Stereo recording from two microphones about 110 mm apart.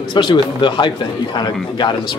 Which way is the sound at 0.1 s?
45° left (ahead or behind).